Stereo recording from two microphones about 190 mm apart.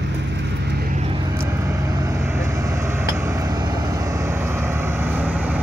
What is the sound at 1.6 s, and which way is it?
Vehicle, 15° right (ahead or behind).